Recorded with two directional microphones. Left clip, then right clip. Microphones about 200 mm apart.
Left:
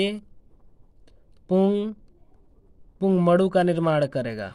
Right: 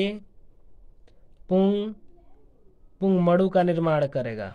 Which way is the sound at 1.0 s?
35° left (ahead or behind).